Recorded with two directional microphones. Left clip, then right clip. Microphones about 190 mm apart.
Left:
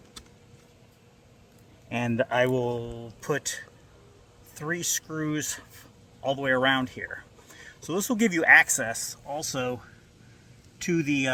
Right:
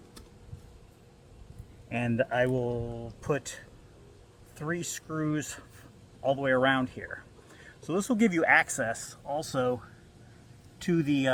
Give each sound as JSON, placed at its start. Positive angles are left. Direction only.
{"t": 1.9, "sound": "a man's voice", "side_deg": 20}